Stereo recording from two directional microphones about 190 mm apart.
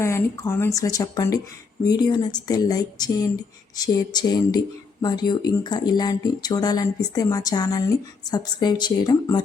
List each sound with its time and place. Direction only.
0.0 s speech: 15° left (ahead or behind)